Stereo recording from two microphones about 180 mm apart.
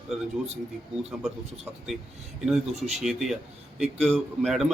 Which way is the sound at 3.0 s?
Centre (ahead or behind).